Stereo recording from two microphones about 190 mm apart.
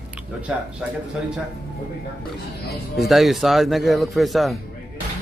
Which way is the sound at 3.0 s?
Centre (ahead or behind).